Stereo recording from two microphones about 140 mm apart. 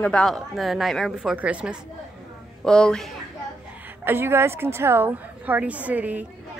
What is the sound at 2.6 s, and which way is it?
Speech, 5° left (ahead or behind).